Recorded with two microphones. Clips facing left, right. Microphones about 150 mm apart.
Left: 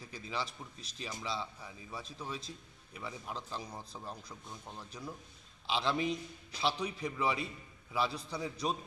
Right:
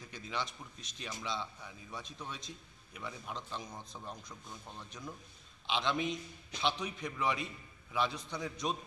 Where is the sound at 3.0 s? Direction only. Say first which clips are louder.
Left 1 dB; 5° left (ahead or behind).